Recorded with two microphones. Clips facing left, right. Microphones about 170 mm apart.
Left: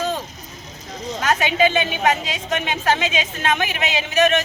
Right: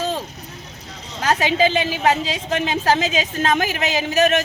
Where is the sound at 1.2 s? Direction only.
35° right (ahead or behind).